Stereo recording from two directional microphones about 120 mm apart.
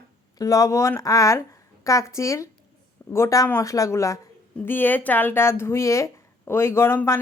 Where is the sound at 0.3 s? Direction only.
30° left (ahead or behind).